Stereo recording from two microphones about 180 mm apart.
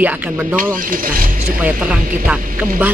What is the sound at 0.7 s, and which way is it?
Speech, 50° right (ahead or behind).